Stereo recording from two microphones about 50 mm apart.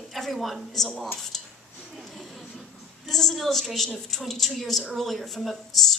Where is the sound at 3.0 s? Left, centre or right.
Centre.